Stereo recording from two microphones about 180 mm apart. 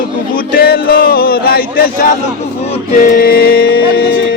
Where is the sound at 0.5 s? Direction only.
60° left (ahead or behind).